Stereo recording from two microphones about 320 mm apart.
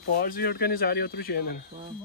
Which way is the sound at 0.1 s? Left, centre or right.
Left.